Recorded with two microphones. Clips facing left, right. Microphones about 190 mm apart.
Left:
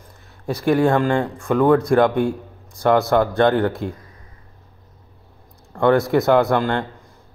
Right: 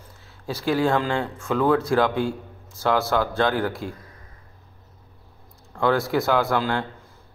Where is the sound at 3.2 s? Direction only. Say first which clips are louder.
Left 6 dB; 20° left (ahead or behind).